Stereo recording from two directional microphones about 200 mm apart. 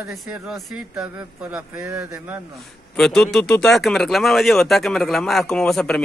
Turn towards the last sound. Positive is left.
turn(degrees=5)  # may be behind; listen again after turning